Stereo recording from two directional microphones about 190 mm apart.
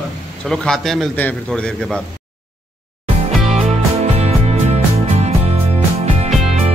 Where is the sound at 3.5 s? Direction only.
35° right (ahead or behind).